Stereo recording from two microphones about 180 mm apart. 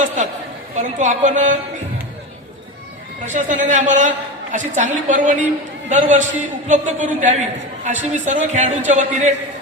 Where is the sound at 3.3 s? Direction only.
45° right (ahead or behind).